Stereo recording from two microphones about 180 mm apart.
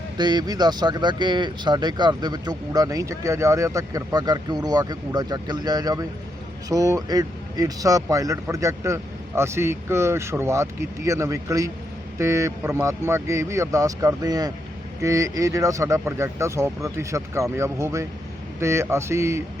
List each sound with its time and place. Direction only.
0.2 s speech: 25° right (ahead or behind)